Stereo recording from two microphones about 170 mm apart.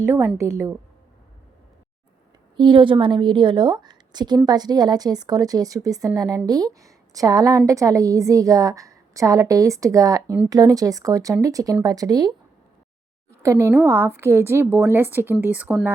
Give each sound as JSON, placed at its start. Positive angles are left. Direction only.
{"t": 0.1, "sound": "a woman's voice", "side_deg": -15}
{"t": 2.6, "sound": "a woman's voice", "side_deg": -30}
{"t": 13.4, "sound": "a woman's voice", "side_deg": -15}